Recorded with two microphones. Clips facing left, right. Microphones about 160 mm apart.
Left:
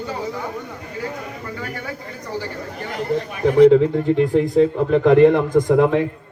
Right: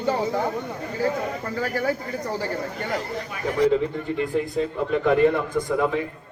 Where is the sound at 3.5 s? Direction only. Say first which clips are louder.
Left 9 dB; 60° left (ahead or behind).